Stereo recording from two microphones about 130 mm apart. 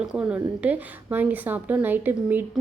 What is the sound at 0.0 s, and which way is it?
A woman's voice, 5° right (ahead or behind).